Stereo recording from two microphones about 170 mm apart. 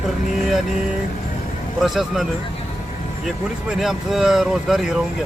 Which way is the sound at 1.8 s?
Centre (ahead or behind).